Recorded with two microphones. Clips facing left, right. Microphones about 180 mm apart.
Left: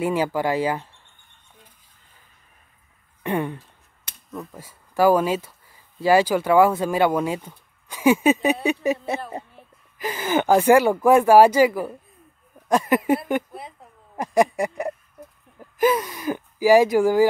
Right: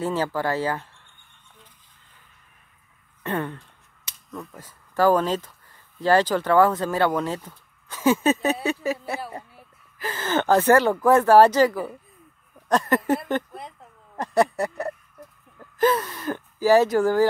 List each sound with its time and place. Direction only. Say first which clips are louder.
0.0 s speech: left 3 dB; 15° left (ahead or behind)
3.3 s speech: left 3 dB; 15° left (ahead or behind)
4.3 s speech: left 2 dB; centre (ahead or behind)